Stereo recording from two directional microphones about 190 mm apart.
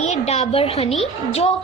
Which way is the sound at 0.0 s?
35° left (ahead or behind).